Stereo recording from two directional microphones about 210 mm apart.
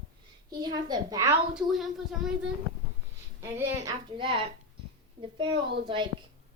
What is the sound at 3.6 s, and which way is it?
Speech, 15° right (ahead or behind).